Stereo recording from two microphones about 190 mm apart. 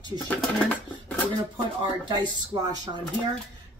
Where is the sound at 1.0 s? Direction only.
10° left (ahead or behind).